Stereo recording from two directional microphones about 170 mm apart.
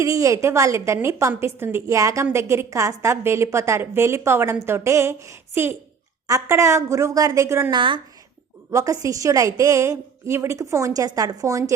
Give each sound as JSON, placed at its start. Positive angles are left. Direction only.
{"t": 0.0, "sound": "a woman's voice", "side_deg": -20}
{"t": 7.7, "sound": "a woman's voice", "side_deg": -30}